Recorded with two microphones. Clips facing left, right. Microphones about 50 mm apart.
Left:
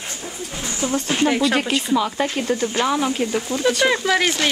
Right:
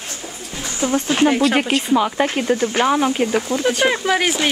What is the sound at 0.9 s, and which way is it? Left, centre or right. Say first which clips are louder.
Speech: right 4 dB; right.